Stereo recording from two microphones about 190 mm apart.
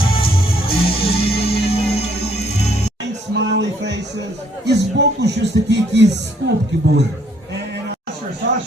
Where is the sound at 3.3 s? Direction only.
65° right (ahead or behind).